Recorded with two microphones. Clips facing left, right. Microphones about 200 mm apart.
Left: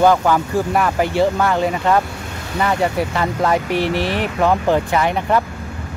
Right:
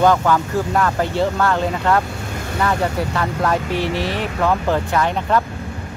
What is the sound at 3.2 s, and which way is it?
Speech, 15° left (ahead or behind).